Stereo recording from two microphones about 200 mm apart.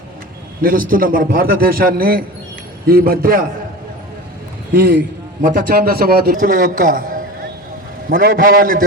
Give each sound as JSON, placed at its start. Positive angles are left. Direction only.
{"t": 0.6, "sound": "a man's voice", "side_deg": -45}
{"t": 4.7, "sound": "a man's voice", "side_deg": -45}